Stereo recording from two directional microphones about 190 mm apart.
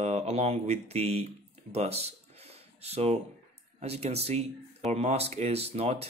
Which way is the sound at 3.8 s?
35° right (ahead or behind).